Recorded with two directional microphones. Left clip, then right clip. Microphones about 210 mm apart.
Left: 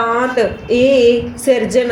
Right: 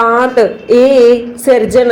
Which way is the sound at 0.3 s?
15° right (ahead or behind).